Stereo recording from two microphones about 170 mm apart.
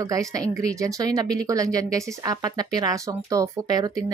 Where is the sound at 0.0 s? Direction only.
20° right (ahead or behind).